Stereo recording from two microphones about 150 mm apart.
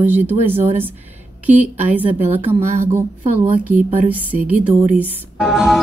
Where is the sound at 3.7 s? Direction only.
60° right (ahead or behind).